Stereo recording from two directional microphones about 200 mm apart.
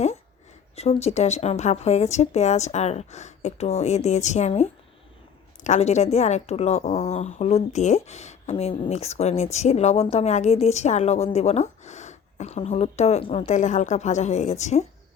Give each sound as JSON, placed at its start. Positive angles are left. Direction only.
{"t": 0.8, "sound": "speech", "side_deg": 30}